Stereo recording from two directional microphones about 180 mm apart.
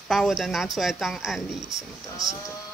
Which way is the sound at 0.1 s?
Centre (ahead or behind).